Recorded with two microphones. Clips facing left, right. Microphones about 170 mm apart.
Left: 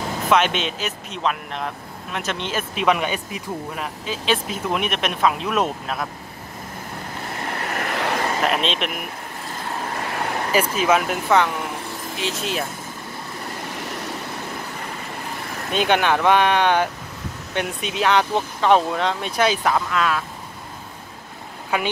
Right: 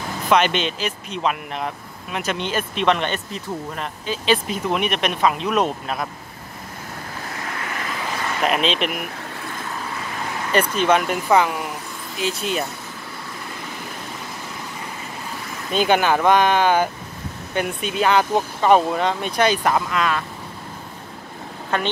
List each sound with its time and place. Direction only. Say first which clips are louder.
0.3 s speech: right 1 dB; centre (ahead or behind)
7.7 s vehicle: left 6 dB; 65° left (ahead or behind)
8.4 s speech: right 1 dB; centre (ahead or behind)
10.5 s speech: right 1 dB; 5° left (ahead or behind)
15.7 s speech: right 1 dB; centre (ahead or behind)
21.7 s speech: even; 10° left (ahead or behind)